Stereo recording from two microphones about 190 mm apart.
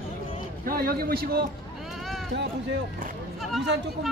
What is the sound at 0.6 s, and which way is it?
Speech, 50° right (ahead or behind).